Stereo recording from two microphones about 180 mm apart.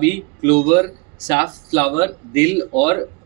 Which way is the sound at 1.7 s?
25° right (ahead or behind).